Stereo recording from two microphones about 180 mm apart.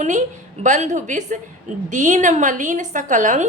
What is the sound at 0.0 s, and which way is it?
A woman's voice, 45° right (ahead or behind).